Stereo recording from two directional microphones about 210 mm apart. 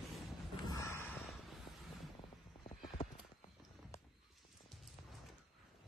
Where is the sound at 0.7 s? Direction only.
15° left (ahead or behind).